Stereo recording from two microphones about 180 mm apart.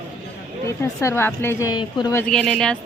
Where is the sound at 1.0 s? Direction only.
15° left (ahead or behind).